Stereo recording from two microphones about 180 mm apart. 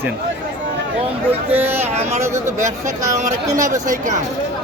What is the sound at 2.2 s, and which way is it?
Speech, 15° right (ahead or behind).